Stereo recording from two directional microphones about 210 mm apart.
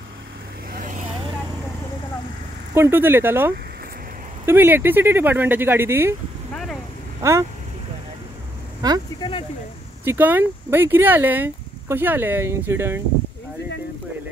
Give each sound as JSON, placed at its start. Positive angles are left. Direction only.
{"t": 0.7, "sound": "vehicle", "side_deg": -40}
{"t": 2.7, "sound": "speech", "side_deg": -10}
{"t": 6.5, "sound": "vehicle", "side_deg": 0}
{"t": 7.2, "sound": "speech", "side_deg": -15}
{"t": 8.8, "sound": "speech", "side_deg": -20}
{"t": 10.0, "sound": "speech", "side_deg": -10}